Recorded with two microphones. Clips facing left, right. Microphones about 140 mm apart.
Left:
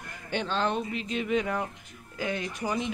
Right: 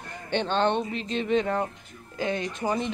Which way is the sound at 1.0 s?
5° left (ahead or behind).